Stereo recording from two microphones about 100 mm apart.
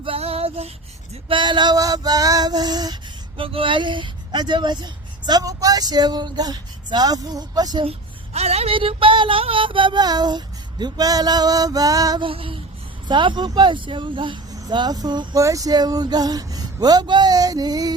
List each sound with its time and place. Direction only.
0.0 s music: 75° right (ahead or behind); by 0.7 s 90° right
1.3 s speech: 50° right (ahead or behind)
3.3 s speech: 65° right (ahead or behind); by 7.9 s 40° right (ahead or behind)
7.9 s speech: 90° right; by 12.2 s 35° right (ahead or behind)
12.2 s a sound: 65° right (ahead or behind)
13.1 s speech: 50° right (ahead or behind)
15.4 s speech: 35° right (ahead or behind)